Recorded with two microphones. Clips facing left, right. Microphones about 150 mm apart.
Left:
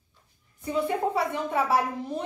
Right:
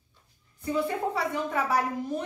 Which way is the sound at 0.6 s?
20° left (ahead or behind).